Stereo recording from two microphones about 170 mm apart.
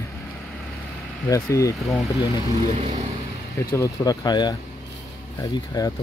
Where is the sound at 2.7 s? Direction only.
35° right (ahead or behind).